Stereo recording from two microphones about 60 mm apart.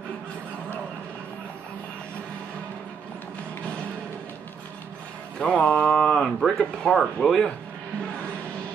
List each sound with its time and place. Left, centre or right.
5.4 s a sound: centre
6.6 s speech: centre
7.0 s speech: centre